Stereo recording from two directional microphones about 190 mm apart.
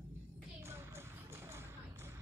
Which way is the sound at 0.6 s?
15° right (ahead or behind).